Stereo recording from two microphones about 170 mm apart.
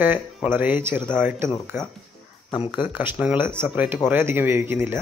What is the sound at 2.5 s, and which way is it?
Speech, 30° left (ahead or behind).